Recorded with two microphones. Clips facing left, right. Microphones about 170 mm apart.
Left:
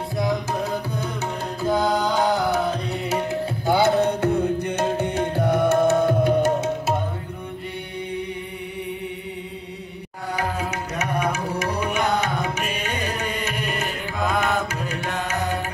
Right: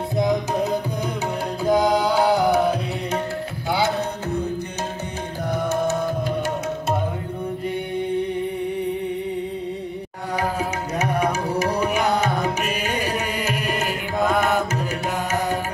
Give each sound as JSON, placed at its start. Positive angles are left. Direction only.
{"t": 0.2, "sound": "music", "side_deg": -20}
{"t": 3.6, "sound": "tabla", "side_deg": 50}
{"t": 5.4, "sound": "music", "side_deg": 60}
{"t": 13.5, "sound": "music", "side_deg": -5}